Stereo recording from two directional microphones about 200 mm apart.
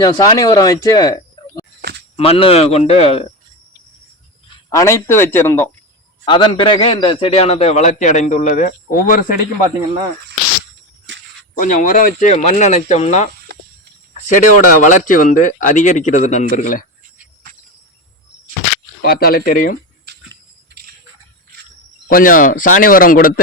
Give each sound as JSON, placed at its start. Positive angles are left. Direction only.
{"t": 0.0, "sound": "speech", "side_deg": 20}
{"t": 4.7, "sound": "speech", "side_deg": 15}
{"t": 6.2, "sound": "a man's voice", "side_deg": 25}
{"t": 11.5, "sound": "a man's voice", "side_deg": 45}
{"t": 19.0, "sound": "speech", "side_deg": 50}
{"t": 22.1, "sound": "speech", "side_deg": 45}